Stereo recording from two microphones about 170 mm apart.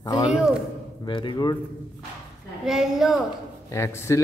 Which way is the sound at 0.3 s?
5° right (ahead or behind).